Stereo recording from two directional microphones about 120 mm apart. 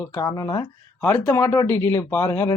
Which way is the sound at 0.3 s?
30° left (ahead or behind).